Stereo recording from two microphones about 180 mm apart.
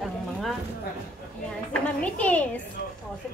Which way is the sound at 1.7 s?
5° left (ahead or behind).